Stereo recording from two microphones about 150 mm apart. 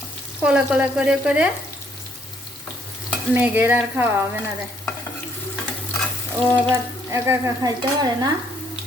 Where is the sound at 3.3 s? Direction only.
10° right (ahead or behind).